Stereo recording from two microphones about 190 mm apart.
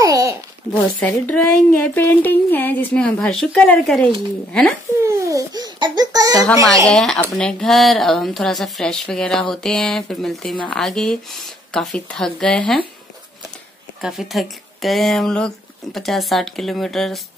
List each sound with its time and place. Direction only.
0.0 s babbling: 15° right (ahead or behind)
0.9 s speech: 10° left (ahead or behind)
5.0 s laughter: 15° right (ahead or behind)
6.9 s speech: 5° left (ahead or behind)
14.0 s speech: centre (ahead or behind)